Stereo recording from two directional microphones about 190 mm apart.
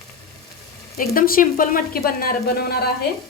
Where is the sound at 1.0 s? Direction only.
50° left (ahead or behind).